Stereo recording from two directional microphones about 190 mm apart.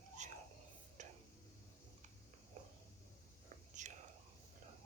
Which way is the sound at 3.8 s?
40° right (ahead or behind).